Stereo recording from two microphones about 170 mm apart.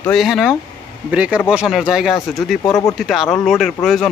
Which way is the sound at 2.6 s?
15° left (ahead or behind).